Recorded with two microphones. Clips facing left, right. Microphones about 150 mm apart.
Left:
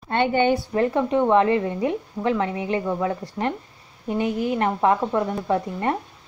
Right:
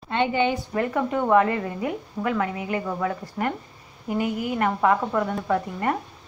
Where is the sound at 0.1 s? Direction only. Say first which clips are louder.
Left 3 dB; 50° left (ahead or behind).